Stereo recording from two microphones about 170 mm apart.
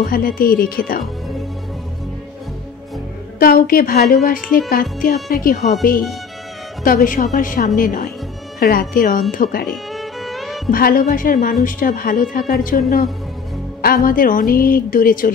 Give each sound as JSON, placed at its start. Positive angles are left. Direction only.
{"t": 0.0, "sound": "speech", "side_deg": 55}
{"t": 3.3, "sound": "speech", "side_deg": 60}
{"t": 6.8, "sound": "speech", "side_deg": 55}
{"t": 9.9, "sound": "music", "side_deg": 0}
{"t": 10.7, "sound": "speech", "side_deg": 55}